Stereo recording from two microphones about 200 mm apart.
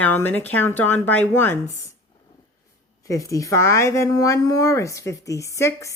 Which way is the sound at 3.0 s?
15° left (ahead or behind).